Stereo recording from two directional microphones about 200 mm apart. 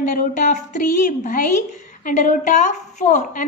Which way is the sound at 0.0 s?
45° left (ahead or behind).